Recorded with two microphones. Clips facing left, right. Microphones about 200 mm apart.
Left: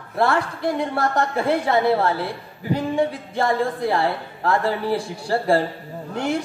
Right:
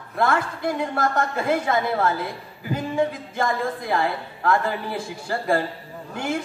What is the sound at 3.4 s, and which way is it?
A woman's voice, 35° left (ahead or behind).